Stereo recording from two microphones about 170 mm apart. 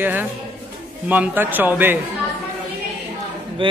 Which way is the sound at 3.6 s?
30° right (ahead or behind).